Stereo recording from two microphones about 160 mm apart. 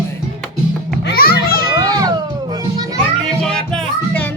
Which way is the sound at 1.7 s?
25° right (ahead or behind).